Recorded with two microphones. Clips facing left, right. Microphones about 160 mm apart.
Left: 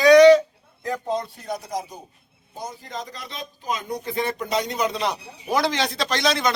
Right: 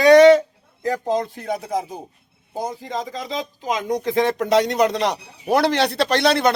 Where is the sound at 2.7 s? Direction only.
90° right; by 6.5 s 60° right (ahead or behind).